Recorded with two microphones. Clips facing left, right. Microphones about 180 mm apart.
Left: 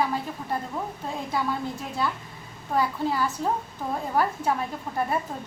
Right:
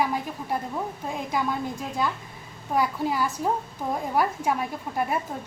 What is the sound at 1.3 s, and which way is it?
Speech, 15° right (ahead or behind).